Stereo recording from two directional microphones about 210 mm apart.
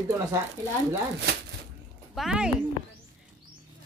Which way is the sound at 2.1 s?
Centre (ahead or behind).